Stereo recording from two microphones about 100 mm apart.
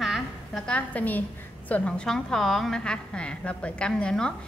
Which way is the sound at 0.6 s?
15° left (ahead or behind).